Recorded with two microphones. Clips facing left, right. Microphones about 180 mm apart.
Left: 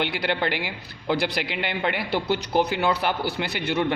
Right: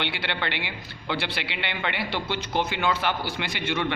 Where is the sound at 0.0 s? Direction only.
40° left (ahead or behind).